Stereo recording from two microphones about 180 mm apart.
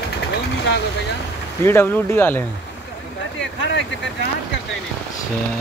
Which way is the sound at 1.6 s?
10° left (ahead or behind).